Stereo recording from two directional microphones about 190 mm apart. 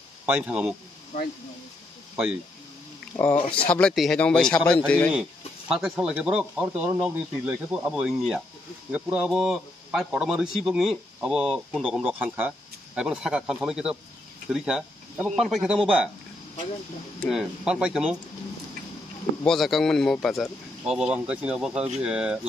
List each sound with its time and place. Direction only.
0.3 s a man's voice: 5° right (ahead or behind)
1.1 s speech: 45° left (ahead or behind)
3.3 s speech: 30° left (ahead or behind)
3.6 s a man's voice: 5° left (ahead or behind)
5.7 s a man's voice: 5° right (ahead or behind)
17.2 s a man's voice: 5° right (ahead or behind)
19.4 s a man's voice: centre (ahead or behind)